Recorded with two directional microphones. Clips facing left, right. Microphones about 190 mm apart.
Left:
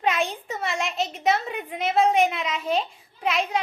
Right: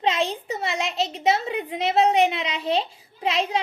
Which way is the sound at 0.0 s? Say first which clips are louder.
Right 1 dB; 25° right (ahead or behind).